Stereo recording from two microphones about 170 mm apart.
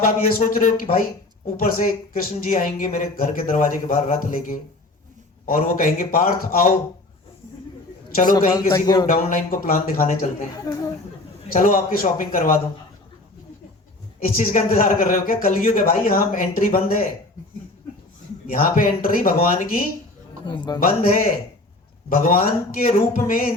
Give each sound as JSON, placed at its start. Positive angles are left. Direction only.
{"t": 0.4, "sound": "a man's voice", "side_deg": 55}
{"t": 8.2, "sound": "speech", "side_deg": 55}
{"t": 8.7, "sound": "speech", "side_deg": 20}
{"t": 9.0, "sound": "a man's voice", "side_deg": 60}
{"t": 10.5, "sound": "speech", "side_deg": 20}
{"t": 11.5, "sound": "a man's voice", "side_deg": 55}
{"t": 14.3, "sound": "a man's voice", "side_deg": 55}
{"t": 18.4, "sound": "a man's voice", "side_deg": 55}
{"t": 20.4, "sound": "speech", "side_deg": 25}
{"t": 20.8, "sound": "a man's voice", "side_deg": 55}